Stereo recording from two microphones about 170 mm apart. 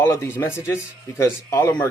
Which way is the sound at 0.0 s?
15° left (ahead or behind).